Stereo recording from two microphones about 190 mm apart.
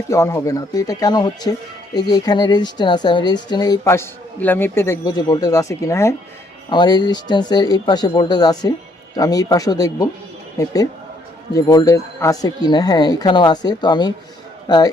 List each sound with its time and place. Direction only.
0.1 s speech: 15° left (ahead or behind)